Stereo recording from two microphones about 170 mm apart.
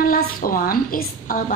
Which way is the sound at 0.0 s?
55° left (ahead or behind).